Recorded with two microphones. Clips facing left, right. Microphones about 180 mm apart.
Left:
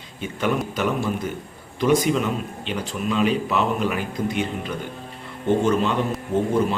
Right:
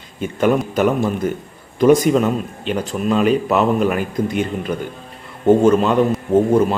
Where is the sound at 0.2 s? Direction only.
45° right (ahead or behind).